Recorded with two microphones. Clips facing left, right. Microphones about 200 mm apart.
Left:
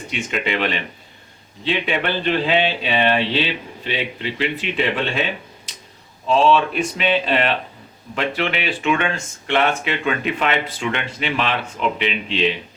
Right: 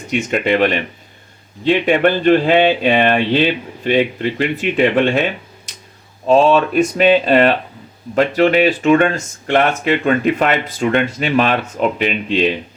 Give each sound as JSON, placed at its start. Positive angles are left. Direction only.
{"t": 0.1, "sound": "speech", "side_deg": -45}
{"t": 6.2, "sound": "speech", "side_deg": -50}